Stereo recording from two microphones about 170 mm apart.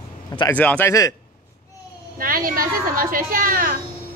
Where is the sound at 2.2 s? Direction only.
55° right (ahead or behind).